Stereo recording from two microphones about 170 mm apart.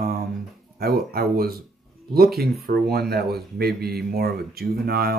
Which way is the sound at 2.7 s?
65° right (ahead or behind).